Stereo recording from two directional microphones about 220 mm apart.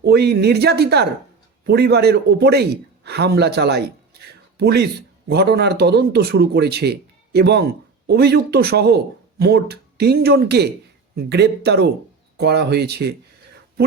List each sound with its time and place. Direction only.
0.0 s a man's voice: 45° right (ahead or behind)